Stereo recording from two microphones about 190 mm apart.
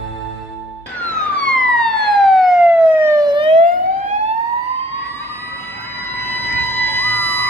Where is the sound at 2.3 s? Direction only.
Centre (ahead or behind); by 3.5 s 20° right (ahead or behind).